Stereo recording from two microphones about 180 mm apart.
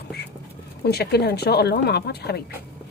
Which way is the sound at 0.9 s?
65° left (ahead or behind).